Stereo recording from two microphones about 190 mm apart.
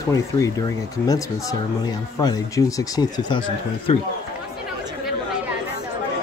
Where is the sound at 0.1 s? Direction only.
15° left (ahead or behind).